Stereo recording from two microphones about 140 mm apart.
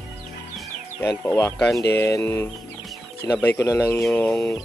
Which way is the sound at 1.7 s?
20° left (ahead or behind).